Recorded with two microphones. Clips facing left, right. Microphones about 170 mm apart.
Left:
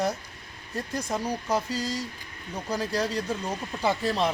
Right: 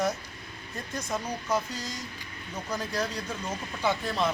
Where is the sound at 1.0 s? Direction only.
35° left (ahead or behind).